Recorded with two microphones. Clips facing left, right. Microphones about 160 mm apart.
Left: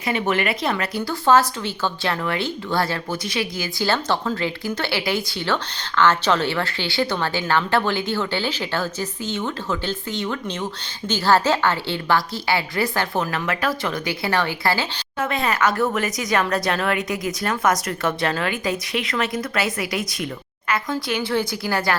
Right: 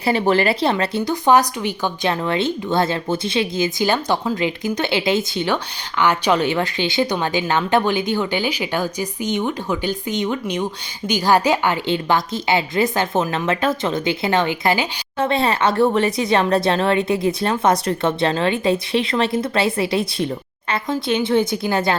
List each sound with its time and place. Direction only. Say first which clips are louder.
0.0 s a woman's voice: right 5 dB; 35° right (ahead or behind)
15.2 s speech: right 3 dB; 30° right (ahead or behind)